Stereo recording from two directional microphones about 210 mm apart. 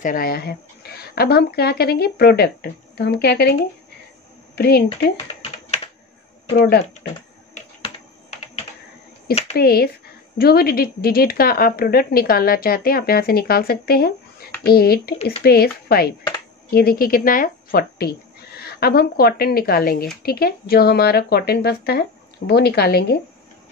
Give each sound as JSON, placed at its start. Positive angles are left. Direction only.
{"t": 0.0, "sound": "a woman's voice", "side_deg": 40}
{"t": 4.6, "sound": "a woman's voice", "side_deg": 50}
{"t": 6.5, "sound": "a woman's voice", "side_deg": 45}
{"t": 9.6, "sound": "a woman's voice", "side_deg": 45}